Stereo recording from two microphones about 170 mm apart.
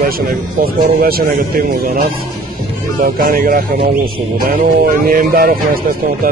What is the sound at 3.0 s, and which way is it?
Speech, 55° right (ahead or behind).